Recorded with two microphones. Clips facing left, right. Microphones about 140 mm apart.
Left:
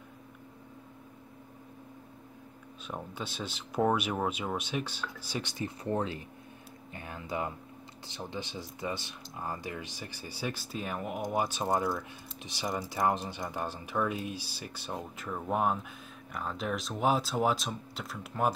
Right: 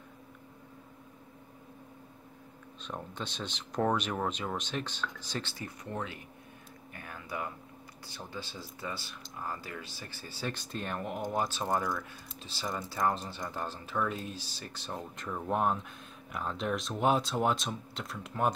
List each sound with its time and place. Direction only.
2.9 s speech: 10° left (ahead or behind)
5.9 s speech: 35° left (ahead or behind)
6.9 s speech: 25° left (ahead or behind); by 18.5 s centre (ahead or behind)